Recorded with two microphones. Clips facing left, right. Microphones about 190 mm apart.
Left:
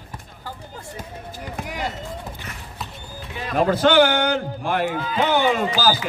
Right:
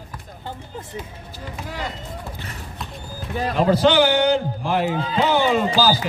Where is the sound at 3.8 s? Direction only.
55° left (ahead or behind).